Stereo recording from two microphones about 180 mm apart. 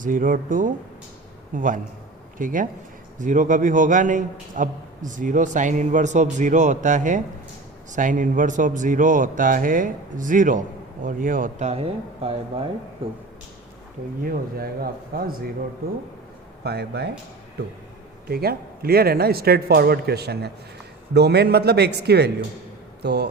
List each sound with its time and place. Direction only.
0.0 s a man's voice: 50° right (ahead or behind); by 12.6 s 30° right (ahead or behind)
14.2 s a man's voice: 55° right (ahead or behind)
16.6 s a man's voice: 65° right (ahead or behind)
18.3 s a man's voice: 60° right (ahead or behind)